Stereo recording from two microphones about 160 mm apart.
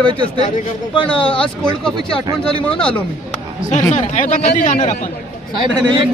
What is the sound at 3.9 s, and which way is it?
Speech, 50° left (ahead or behind).